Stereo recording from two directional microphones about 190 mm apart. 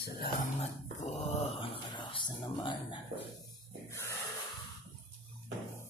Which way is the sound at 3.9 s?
15° left (ahead or behind).